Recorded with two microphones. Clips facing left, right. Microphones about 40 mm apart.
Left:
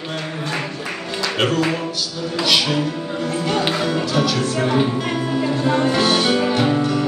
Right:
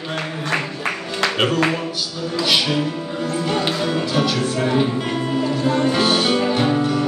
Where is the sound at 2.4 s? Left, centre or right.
Centre.